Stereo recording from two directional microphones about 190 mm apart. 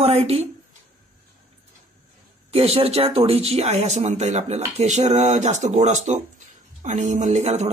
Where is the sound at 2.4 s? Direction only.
30° right (ahead or behind).